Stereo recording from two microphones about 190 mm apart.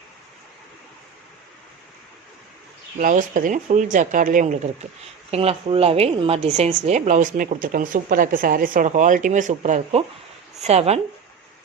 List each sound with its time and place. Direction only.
3.0 s a woman's voice: 45° right (ahead or behind)